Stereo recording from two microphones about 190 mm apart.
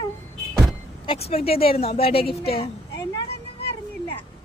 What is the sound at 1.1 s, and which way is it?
Speech, 30° left (ahead or behind).